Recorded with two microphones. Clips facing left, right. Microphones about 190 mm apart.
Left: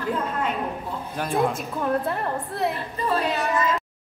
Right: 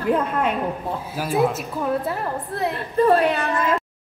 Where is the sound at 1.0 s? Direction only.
5° right (ahead or behind).